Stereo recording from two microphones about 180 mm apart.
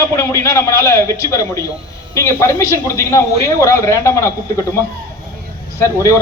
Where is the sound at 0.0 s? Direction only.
15° left (ahead or behind).